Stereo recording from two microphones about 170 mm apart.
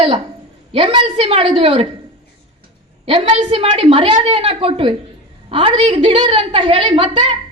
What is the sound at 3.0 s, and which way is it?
A woman's voice, 30° right (ahead or behind).